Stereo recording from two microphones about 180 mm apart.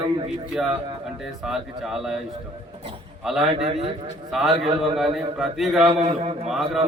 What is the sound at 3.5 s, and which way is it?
Speech, 30° right (ahead or behind).